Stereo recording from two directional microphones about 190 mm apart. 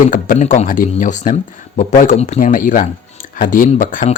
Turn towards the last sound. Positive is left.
turn(degrees=40)  # may be behind; listen again after turning